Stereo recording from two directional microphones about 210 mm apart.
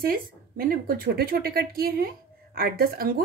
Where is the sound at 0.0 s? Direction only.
45° right (ahead or behind).